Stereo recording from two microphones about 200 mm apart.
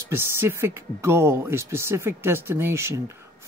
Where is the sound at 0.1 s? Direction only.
10° right (ahead or behind).